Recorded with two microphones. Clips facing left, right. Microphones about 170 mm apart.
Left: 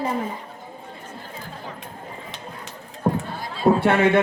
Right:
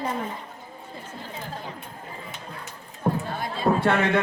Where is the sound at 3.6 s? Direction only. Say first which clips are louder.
Left 5 dB; 25° left (ahead or behind).